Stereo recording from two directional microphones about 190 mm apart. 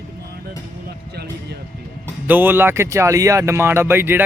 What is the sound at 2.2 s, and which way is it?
Speech, 10° right (ahead or behind).